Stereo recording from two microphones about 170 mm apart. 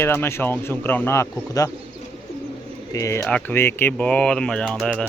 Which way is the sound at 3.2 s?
5° left (ahead or behind).